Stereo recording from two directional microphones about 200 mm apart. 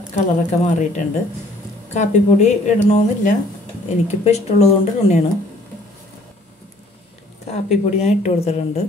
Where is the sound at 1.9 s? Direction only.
35° left (ahead or behind).